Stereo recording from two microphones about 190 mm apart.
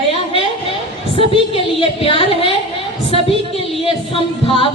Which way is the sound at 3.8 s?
30° left (ahead or behind).